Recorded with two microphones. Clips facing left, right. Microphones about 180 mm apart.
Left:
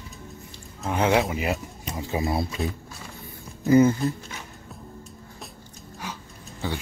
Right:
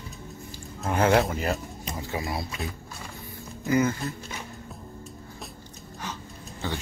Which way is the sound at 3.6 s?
30° left (ahead or behind).